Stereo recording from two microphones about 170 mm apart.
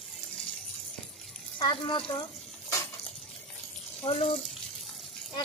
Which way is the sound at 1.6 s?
30° left (ahead or behind).